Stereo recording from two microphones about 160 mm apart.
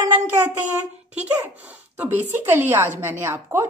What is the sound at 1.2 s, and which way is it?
A woman's voice, 10° right (ahead or behind).